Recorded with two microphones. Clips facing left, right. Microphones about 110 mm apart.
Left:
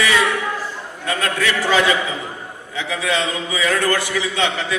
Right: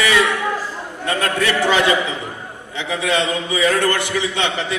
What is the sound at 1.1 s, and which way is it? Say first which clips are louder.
Speech: right 2 dB; 25° right (ahead or behind).